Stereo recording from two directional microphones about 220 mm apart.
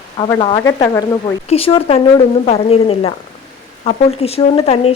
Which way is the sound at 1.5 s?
25° left (ahead or behind).